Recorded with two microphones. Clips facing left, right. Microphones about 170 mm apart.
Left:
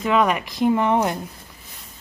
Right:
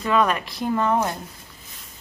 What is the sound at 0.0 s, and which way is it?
Speech, 15° left (ahead or behind).